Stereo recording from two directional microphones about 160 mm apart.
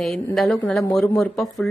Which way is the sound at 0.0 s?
Centre (ahead or behind).